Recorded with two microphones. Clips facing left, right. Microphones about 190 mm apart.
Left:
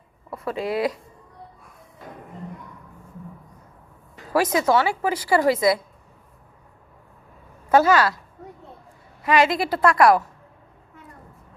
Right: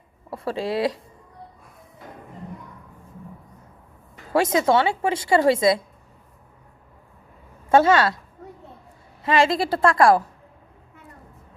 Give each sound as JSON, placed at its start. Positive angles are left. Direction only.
{"t": 0.3, "sound": "speech", "side_deg": -30}
{"t": 4.3, "sound": "a woman's voice", "side_deg": -25}
{"t": 7.7, "sound": "a woman's voice", "side_deg": -25}
{"t": 9.2, "sound": "a woman's voice", "side_deg": -25}